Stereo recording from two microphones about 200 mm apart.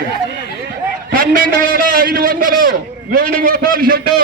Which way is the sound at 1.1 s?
45° right (ahead or behind).